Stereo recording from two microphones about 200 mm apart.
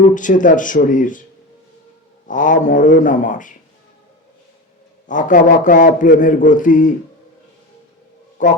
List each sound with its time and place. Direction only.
0.1 s a man's voice: 40° left (ahead or behind)
2.2 s a man's voice: 40° left (ahead or behind)
5.0 s a man's voice: 40° left (ahead or behind)
8.4 s a man's voice: 40° left (ahead or behind)